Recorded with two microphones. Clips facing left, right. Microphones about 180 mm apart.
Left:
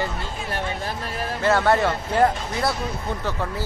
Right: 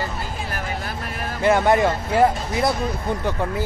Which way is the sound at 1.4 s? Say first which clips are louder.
Right 2 dB; 15° right (ahead or behind).